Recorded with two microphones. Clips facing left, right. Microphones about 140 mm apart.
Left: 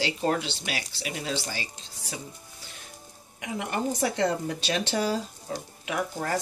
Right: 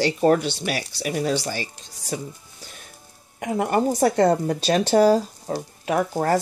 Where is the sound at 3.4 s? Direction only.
45° right (ahead or behind).